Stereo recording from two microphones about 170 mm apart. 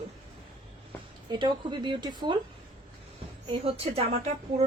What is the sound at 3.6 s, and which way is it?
Speech, 35° right (ahead or behind).